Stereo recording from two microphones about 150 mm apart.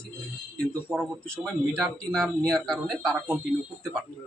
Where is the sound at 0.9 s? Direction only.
15° right (ahead or behind).